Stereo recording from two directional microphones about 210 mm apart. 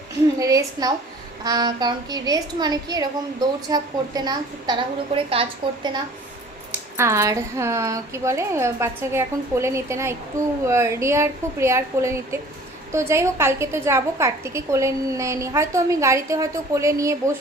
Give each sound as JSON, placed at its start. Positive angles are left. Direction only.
{"t": 0.3, "sound": "a woman's voice", "side_deg": -15}
{"t": 6.9, "sound": "a woman's voice", "side_deg": -15}